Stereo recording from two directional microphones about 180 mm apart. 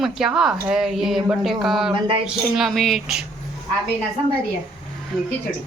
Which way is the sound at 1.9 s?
30° right (ahead or behind).